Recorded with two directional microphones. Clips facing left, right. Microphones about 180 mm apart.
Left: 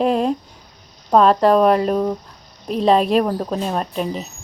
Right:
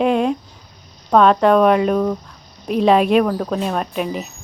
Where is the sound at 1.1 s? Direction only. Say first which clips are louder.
Right 1 dB; centre (ahead or behind).